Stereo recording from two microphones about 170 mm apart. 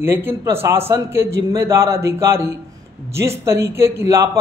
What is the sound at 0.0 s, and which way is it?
Speech, 15° right (ahead or behind).